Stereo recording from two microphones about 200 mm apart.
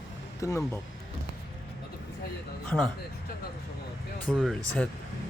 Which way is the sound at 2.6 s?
5° left (ahead or behind).